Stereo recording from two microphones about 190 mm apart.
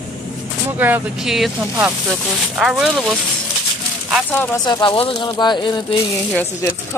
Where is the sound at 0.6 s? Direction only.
10° right (ahead or behind); by 4.6 s 10° left (ahead or behind).